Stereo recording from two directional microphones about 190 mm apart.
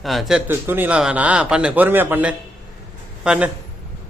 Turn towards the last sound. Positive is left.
turn(degrees=-5)  # may be behind; listen again after turning